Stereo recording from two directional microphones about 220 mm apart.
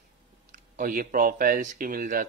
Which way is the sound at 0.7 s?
40° right (ahead or behind).